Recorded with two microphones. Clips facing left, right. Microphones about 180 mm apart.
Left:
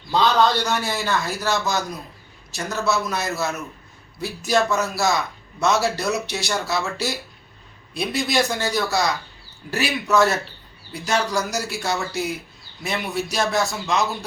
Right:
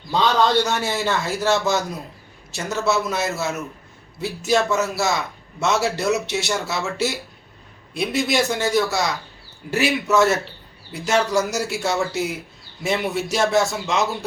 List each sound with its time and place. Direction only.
0.5 s speech: 25° right (ahead or behind)